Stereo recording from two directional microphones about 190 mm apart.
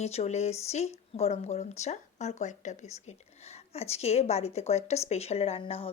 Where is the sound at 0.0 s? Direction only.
35° left (ahead or behind).